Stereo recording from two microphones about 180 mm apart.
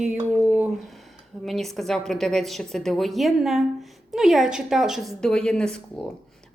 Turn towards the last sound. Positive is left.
turn(degrees=5)  # may be behind; listen again after turning